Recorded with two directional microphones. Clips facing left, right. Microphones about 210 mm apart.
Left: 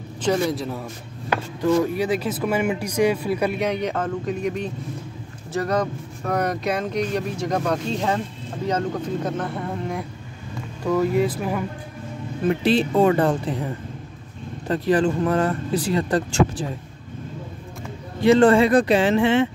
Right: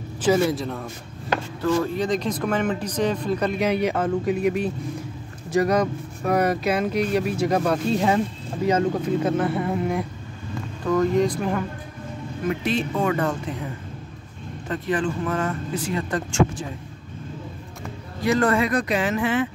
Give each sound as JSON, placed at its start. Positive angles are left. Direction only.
{"t": 0.2, "sound": "a man's voice", "side_deg": -5}
{"t": 1.3, "sound": "speech", "side_deg": 15}
{"t": 3.5, "sound": "speech", "side_deg": -5}
{"t": 10.8, "sound": "speech", "side_deg": 10}
{"t": 12.4, "sound": "speech", "side_deg": 30}
{"t": 14.7, "sound": "speech", "side_deg": 35}
{"t": 18.2, "sound": "speech", "side_deg": 30}